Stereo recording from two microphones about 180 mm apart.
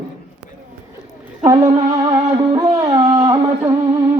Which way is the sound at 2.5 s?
20° right (ahead or behind).